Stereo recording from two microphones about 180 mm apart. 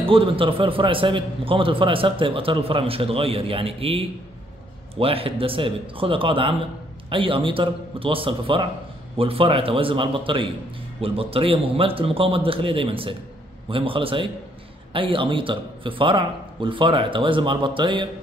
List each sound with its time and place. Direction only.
0.0 s a man's voice: 30° right (ahead or behind)